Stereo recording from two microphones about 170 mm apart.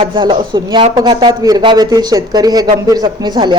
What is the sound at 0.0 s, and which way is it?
Speech, 30° right (ahead or behind).